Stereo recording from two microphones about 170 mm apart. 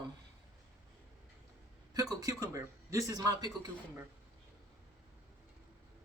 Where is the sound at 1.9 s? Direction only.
20° right (ahead or behind).